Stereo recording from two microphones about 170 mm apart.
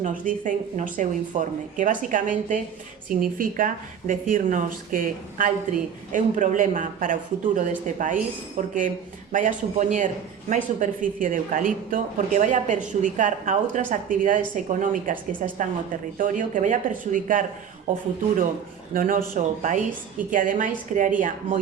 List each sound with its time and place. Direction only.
0.0 s speech: 50° right (ahead or behind)
18.9 s speech: 55° right (ahead or behind)